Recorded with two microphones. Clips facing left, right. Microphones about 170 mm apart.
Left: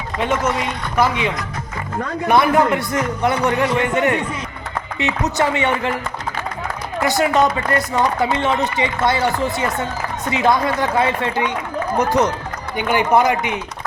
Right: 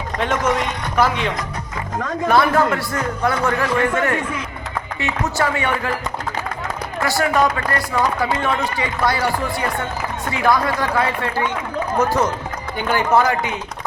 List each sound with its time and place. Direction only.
0.2 s speech: 5° left (ahead or behind)
2.2 s speech: 15° left (ahead or behind)
7.0 s speech: 20° left (ahead or behind)